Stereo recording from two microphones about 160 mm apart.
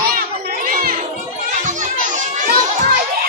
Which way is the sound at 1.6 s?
50° right (ahead or behind).